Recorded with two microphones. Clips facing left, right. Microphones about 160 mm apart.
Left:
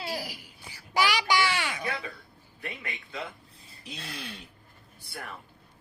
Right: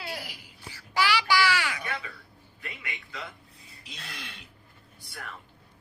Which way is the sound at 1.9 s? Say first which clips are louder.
Left 2 dB; 40° left (ahead or behind).